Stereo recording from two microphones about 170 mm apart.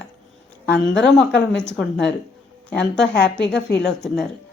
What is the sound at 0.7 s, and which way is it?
Speech, 90° left.